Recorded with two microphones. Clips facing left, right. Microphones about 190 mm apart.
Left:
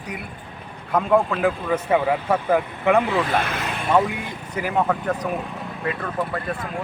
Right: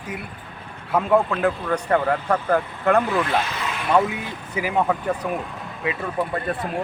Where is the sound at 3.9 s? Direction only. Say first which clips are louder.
Even; 5° right (ahead or behind).